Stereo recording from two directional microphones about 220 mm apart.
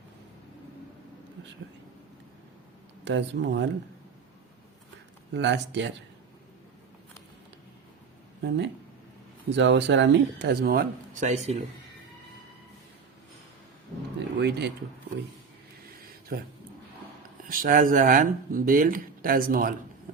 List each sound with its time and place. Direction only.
3.0 s speech: 55° right (ahead or behind)
5.3 s speech: 55° right (ahead or behind)
8.4 s speech: 50° right (ahead or behind); by 11.5 s 30° right (ahead or behind)
14.3 s speech: 50° right (ahead or behind)
16.3 s speech: 45° right (ahead or behind)
17.5 s speech: 40° right (ahead or behind)